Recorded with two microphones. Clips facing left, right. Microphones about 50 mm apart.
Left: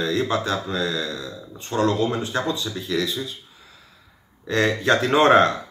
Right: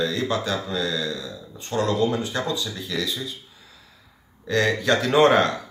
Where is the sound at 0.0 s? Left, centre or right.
Left.